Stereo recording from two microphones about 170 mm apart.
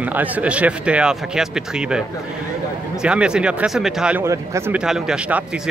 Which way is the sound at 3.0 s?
5° right (ahead or behind).